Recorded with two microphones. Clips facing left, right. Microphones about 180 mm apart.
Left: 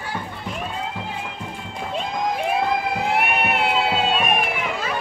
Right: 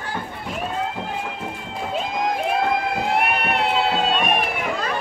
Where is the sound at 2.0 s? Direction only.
Centre (ahead or behind).